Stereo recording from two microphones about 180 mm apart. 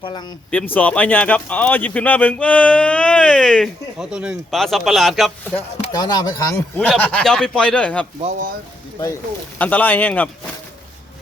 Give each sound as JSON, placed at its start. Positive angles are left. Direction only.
{"t": 0.0, "sound": "speech", "side_deg": 25}
{"t": 0.5, "sound": "speech", "side_deg": 10}
{"t": 5.9, "sound": "speech", "side_deg": 20}
{"t": 8.2, "sound": "speech", "side_deg": -45}
{"t": 9.6, "sound": "speech", "side_deg": 10}